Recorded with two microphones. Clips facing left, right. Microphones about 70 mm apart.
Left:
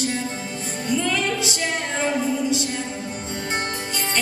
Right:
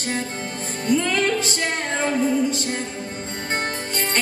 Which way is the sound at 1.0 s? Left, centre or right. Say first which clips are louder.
Right 2 dB; right.